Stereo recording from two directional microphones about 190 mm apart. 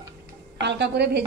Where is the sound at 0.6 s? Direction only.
65° right (ahead or behind).